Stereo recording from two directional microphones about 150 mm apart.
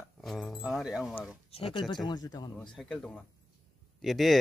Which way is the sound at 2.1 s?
25° left (ahead or behind).